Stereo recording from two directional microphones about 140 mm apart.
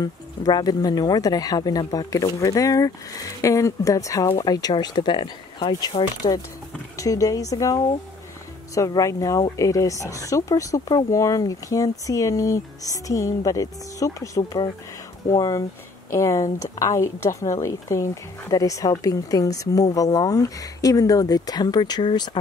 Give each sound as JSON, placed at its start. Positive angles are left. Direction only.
{"t": 0.0, "sound": "speech", "side_deg": 30}